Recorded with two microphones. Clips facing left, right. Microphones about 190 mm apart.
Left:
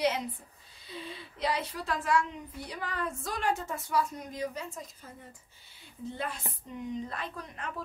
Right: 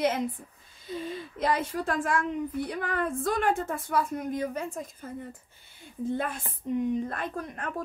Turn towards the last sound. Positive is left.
turn(degrees=-50)  # may be behind; listen again after turning